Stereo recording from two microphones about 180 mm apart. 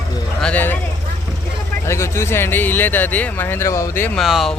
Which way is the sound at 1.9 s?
15° left (ahead or behind).